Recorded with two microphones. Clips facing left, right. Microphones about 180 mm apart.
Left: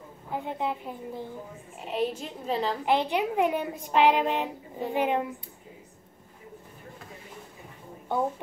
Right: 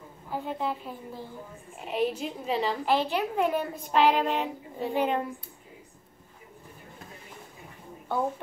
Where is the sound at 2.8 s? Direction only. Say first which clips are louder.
Left 1 dB; 20° left (ahead or behind).